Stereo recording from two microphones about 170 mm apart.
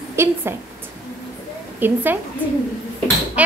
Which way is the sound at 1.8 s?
10° right (ahead or behind).